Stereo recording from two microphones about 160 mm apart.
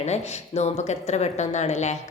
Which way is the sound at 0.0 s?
45° left (ahead or behind).